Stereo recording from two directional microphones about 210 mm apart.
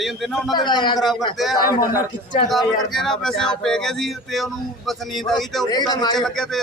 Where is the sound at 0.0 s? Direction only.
Centre (ahead or behind).